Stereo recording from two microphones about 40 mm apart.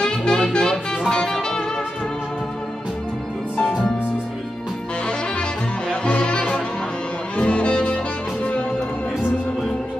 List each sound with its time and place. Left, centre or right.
0.0 s music: centre
3.5 s music: centre
6.0 s music: left